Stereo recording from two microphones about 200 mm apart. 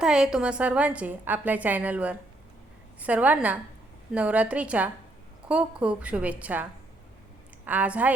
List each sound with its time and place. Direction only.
0.0 s a woman's voice: 5° right (ahead or behind)